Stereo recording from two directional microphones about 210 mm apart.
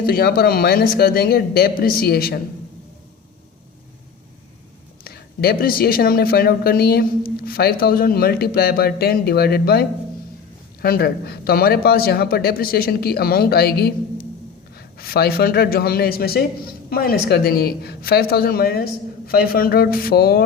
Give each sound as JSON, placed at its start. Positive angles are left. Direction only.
{"t": 0.0, "sound": "speech", "side_deg": 45}
{"t": 5.0, "sound": "speech", "side_deg": 45}